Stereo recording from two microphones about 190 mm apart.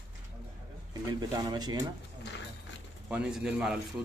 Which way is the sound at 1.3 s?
20° right (ahead or behind).